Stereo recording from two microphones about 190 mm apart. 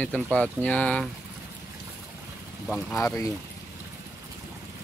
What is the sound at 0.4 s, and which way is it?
Speech, 5° left (ahead or behind).